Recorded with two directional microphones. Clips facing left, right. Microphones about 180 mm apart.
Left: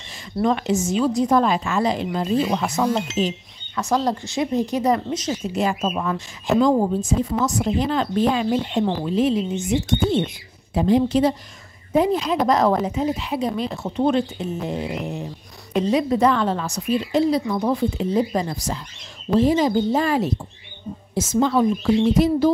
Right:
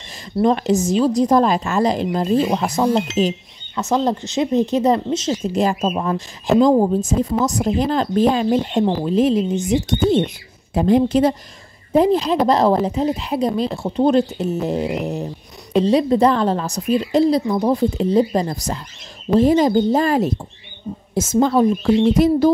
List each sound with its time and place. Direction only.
0.4 s a woman's voice: 35° right (ahead or behind)
3.7 s a woman's voice: 25° right (ahead or behind)
10.7 s a woman's voice: 50° right (ahead or behind)
11.9 s a woman's voice: 35° right (ahead or behind)